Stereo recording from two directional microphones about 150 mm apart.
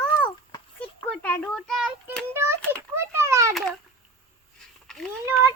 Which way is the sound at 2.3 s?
15° right (ahead or behind).